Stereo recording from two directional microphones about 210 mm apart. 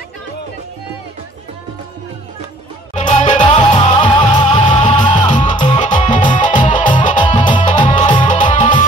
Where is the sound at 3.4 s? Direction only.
20° left (ahead or behind).